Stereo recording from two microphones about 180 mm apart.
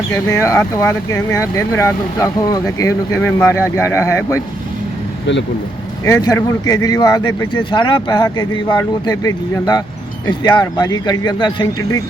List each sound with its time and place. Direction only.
0.3 s speech: 15° left (ahead or behind)
5.2 s speech: 85° left
6.1 s speech: 15° left (ahead or behind)